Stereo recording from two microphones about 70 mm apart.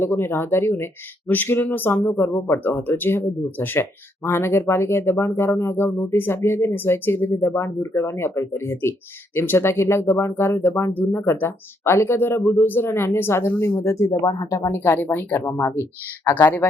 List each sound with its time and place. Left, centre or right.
0.0 s speech: left
14.8 s speech: left